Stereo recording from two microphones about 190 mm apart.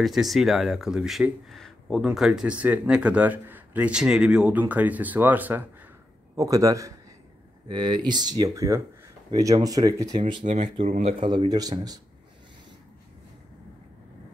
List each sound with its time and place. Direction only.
0.0 s a man's voice: centre (ahead or behind); by 12.0 s 20° right (ahead or behind)